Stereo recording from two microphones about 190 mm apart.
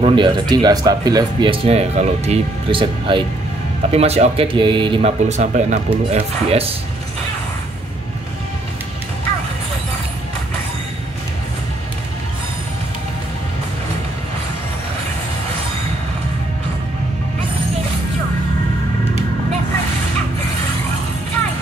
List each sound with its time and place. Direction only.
0.0 s a man's voice: 25° right (ahead or behind)